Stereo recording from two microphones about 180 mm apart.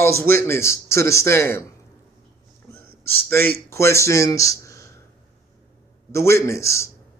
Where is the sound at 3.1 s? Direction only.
10° left (ahead or behind).